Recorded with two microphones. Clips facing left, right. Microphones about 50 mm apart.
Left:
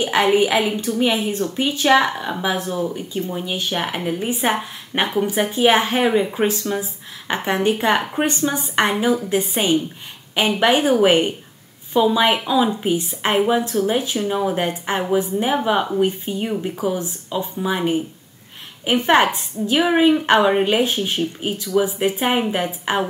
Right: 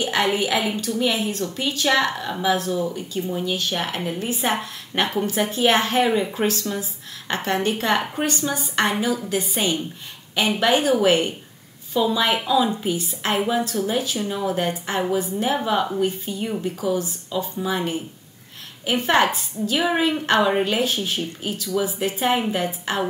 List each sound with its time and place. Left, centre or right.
0.0 s speech: centre